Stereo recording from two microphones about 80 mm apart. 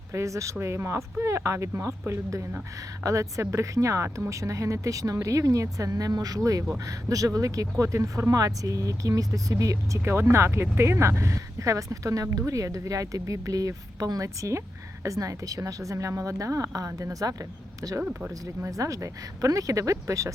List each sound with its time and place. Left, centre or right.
0.1 s speech: right
10.0 s speech: right
18.0 s speech: centre
18.6 s speech: right